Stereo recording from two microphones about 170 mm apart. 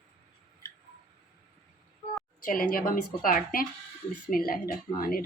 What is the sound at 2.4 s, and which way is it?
A woman's voice, 55° left (ahead or behind).